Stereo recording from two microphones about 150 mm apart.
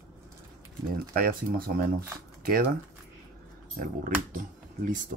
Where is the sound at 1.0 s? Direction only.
75° right (ahead or behind).